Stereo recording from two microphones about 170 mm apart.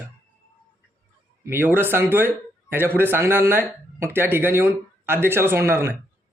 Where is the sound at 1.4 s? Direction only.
15° right (ahead or behind).